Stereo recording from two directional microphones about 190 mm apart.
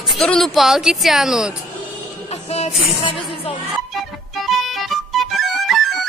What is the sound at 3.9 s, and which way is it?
Music, centre (ahead or behind).